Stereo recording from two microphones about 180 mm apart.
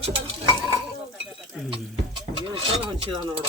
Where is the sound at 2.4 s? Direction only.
30° right (ahead or behind).